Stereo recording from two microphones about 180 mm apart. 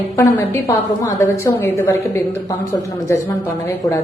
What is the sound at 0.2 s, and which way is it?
A woman's voice, 15° left (ahead or behind).